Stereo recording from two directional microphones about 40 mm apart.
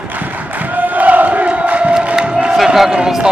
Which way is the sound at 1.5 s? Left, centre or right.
Right.